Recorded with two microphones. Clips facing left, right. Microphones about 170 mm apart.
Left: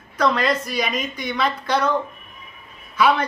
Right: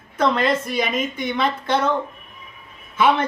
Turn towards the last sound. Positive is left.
turn(degrees=-25)  # may be behind; listen again after turning